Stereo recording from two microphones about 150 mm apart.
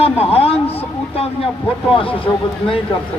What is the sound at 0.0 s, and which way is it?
Speech, 40° left (ahead or behind).